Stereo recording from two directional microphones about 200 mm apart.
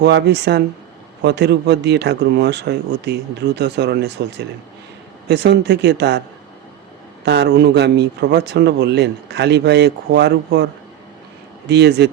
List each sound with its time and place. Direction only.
0.0 s a man's voice: 60° right (ahead or behind)
7.3 s a man's voice: 60° right (ahead or behind)
11.7 s a man's voice: 60° right (ahead or behind)